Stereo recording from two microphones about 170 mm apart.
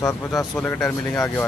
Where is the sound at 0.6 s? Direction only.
10° left (ahead or behind).